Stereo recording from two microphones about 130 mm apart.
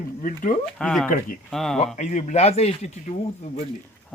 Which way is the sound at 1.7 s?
65° left (ahead or behind).